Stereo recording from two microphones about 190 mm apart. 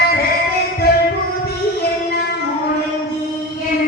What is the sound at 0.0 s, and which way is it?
Music, 55° left (ahead or behind).